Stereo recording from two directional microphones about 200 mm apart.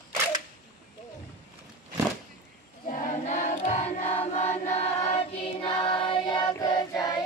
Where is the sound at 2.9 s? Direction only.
40° left (ahead or behind).